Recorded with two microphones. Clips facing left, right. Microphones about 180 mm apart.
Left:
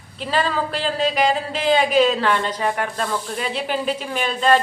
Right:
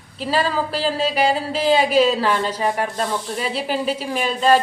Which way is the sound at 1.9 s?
5° right (ahead or behind).